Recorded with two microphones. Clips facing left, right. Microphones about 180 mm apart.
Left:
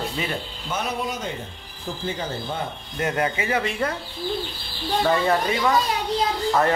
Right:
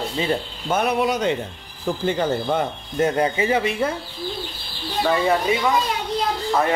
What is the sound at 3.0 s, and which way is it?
Speech, 30° right (ahead or behind).